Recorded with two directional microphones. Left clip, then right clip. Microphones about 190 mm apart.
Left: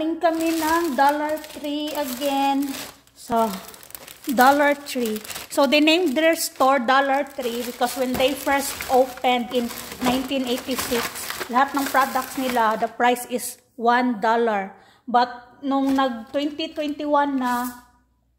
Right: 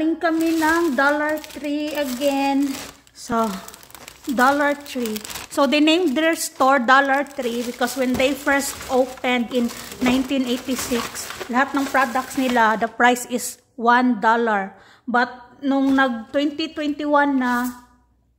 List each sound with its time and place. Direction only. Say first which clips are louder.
0.0 s stir: right 1 dB; 20° right (ahead or behind)
2.2 s a woman's voice: right 1 dB; 15° right (ahead or behind)
3.3 s speech: left 1 dB; 5° right (ahead or behind)
4.4 s a woman's voice: left 1 dB; 10° left (ahead or behind); by 7.5 s 15° right (ahead or behind)
7.8 s stir: right 1 dB; 20° right (ahead or behind)
15.0 s stir: left 1 dB; 25° right (ahead or behind)